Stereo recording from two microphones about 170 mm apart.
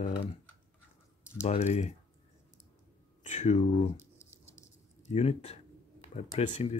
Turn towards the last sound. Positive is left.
turn(degrees=40)  # may be behind; listen again after turning